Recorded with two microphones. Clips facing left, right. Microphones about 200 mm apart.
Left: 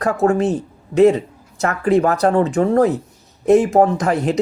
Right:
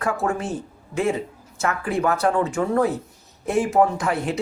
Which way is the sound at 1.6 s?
40° left (ahead or behind).